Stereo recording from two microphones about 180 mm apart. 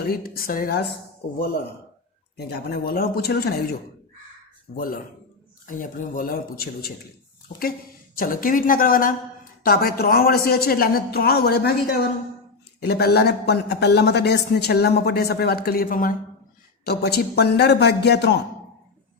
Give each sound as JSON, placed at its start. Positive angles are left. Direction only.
{"t": 0.0, "sound": "speech", "side_deg": 55}
{"t": 2.3, "sound": "speech", "side_deg": 60}
{"t": 4.7, "sound": "speech", "side_deg": 50}
{"t": 8.1, "sound": "speech", "side_deg": 50}
{"t": 12.8, "sound": "speech", "side_deg": 65}
{"t": 16.8, "sound": "a man's voice", "side_deg": 65}